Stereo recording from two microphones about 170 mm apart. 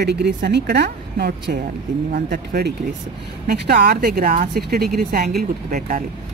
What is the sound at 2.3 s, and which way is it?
Speech, 75° right (ahead or behind).